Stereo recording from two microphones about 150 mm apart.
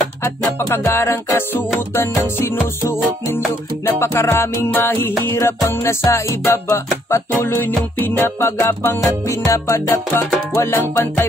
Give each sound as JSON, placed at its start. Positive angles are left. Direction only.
{"t": 0.7, "sound": "music", "side_deg": 20}